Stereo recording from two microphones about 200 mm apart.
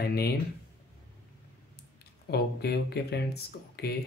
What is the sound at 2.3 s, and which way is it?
Speech, 55° left (ahead or behind).